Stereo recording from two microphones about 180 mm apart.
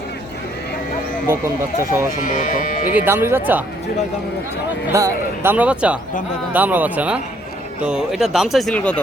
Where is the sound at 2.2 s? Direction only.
50° left (ahead or behind).